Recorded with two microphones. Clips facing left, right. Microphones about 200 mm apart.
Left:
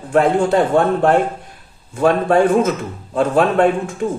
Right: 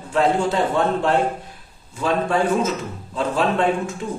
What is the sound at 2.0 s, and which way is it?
Speech, 55° left (ahead or behind).